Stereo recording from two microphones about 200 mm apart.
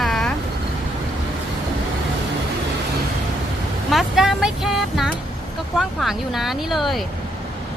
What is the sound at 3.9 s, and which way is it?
Speech, centre (ahead or behind).